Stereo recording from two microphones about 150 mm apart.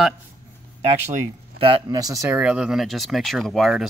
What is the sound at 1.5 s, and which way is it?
Speech, 35° right (ahead or behind).